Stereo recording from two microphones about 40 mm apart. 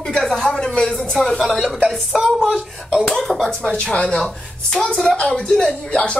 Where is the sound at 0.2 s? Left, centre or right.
Centre.